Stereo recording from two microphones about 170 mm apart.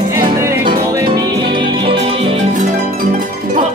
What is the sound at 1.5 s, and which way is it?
Music, 30° right (ahead or behind).